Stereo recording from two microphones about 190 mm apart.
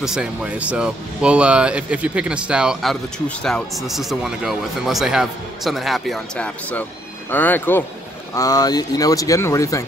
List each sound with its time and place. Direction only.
0.0 s speech: 5° right (ahead or behind); by 9.8 s 15° left (ahead or behind)